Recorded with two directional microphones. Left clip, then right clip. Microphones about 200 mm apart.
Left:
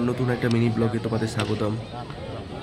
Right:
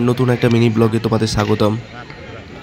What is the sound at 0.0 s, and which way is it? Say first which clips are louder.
A man's voice: right 9 dB; 25° right (ahead or behind).